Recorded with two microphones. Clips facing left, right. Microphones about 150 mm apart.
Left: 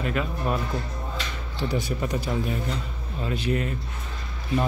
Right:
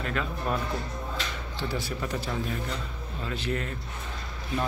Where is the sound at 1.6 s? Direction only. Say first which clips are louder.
Left 5 dB; 15° left (ahead or behind).